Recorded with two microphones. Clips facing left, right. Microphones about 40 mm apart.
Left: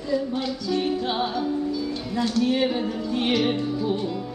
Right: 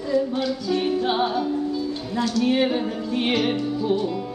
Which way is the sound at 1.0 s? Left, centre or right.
Centre.